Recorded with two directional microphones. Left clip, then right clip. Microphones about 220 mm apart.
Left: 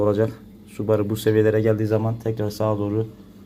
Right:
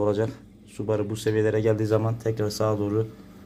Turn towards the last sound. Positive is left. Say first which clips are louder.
# left 2 dB
turn(degrees=0)  # may be behind; listen again after turning